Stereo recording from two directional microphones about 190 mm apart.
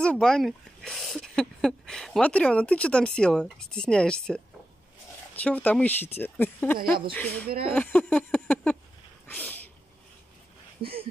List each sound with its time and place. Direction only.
0.0 s speech: 5° left (ahead or behind)
6.8 s speech: 50° right (ahead or behind)
7.2 s speech: 10° left (ahead or behind)
9.3 s sneeze: 10° left (ahead or behind)
10.8 s a sound: 55° right (ahead or behind)